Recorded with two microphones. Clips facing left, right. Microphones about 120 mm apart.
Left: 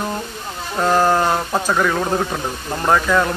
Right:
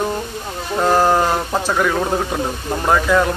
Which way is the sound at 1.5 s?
Centre (ahead or behind).